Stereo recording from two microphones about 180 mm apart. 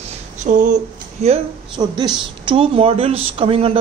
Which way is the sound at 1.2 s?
25° right (ahead or behind).